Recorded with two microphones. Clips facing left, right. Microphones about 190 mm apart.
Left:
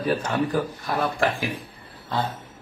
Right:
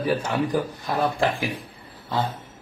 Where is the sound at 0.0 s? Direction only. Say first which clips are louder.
Even; 10° right (ahead or behind).